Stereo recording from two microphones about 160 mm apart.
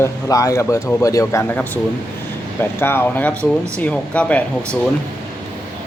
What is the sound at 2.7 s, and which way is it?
Speech, 15° left (ahead or behind).